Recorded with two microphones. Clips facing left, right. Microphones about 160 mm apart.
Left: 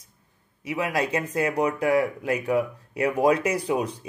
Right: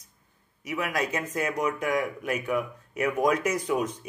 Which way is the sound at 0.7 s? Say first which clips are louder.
Left 3 dB; 30° left (ahead or behind).